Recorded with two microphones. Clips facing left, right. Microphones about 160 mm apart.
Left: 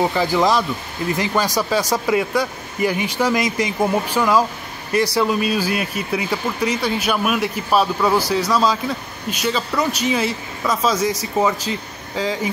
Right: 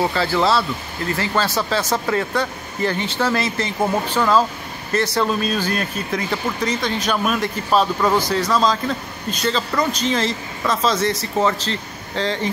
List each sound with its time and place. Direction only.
0.1 s speech: 15° left (ahead or behind)